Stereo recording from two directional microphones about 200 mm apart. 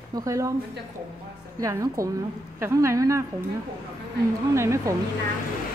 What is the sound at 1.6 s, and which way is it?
A woman's voice, 15° right (ahead or behind).